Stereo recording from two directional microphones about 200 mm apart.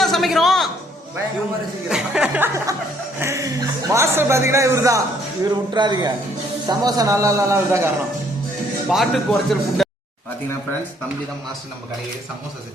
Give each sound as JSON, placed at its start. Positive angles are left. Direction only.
{"t": 0.0, "sound": "a sound", "side_deg": 0}
{"t": 1.9, "sound": "a man's voice", "side_deg": -5}
{"t": 8.9, "sound": "speech", "side_deg": 0}